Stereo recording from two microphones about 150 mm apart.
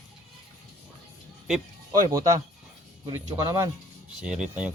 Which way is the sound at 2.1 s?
20° right (ahead or behind).